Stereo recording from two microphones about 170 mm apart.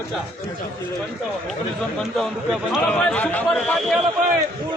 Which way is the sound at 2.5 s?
Centre (ahead or behind).